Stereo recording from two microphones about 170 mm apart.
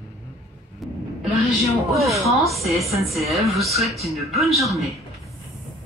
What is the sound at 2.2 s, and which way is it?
Speech, centre (ahead or behind).